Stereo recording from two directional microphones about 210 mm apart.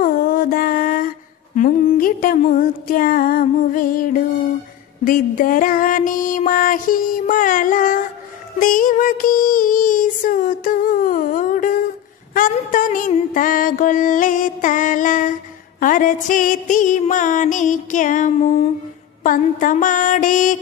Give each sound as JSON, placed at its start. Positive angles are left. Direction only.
{"t": 0.0, "sound": "mantra", "side_deg": 40}
{"t": 5.0, "sound": "child singing", "side_deg": 40}